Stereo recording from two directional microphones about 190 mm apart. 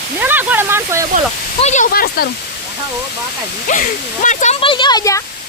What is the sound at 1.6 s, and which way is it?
Speech, 40° left (ahead or behind).